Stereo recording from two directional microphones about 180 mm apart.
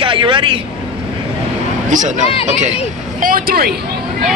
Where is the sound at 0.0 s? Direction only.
30° right (ahead or behind).